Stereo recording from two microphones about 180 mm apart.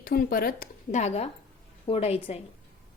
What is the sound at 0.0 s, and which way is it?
A woman's voice, 55° left (ahead or behind).